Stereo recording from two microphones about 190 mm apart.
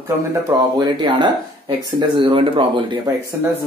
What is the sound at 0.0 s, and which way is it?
Speech, 15° right (ahead or behind).